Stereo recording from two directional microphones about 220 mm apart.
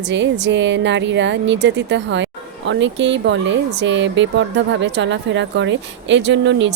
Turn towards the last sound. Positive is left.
turn(degrees=-55)  # may be behind; listen again after turning